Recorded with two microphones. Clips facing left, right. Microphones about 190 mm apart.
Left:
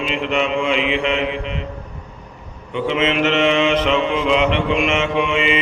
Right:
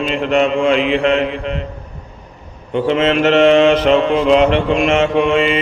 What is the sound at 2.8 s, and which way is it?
Mantra, 40° right (ahead or behind).